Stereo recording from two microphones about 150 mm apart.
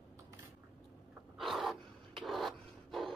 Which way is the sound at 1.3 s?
Centre (ahead or behind).